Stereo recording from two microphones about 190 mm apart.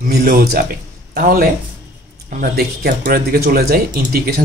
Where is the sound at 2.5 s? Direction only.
55° right (ahead or behind).